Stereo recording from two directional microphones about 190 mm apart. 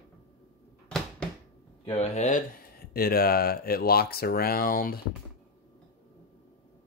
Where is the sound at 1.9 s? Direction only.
35° left (ahead or behind).